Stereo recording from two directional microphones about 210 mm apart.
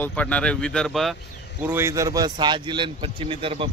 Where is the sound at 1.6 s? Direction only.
10° right (ahead or behind); by 3.7 s 25° right (ahead or behind).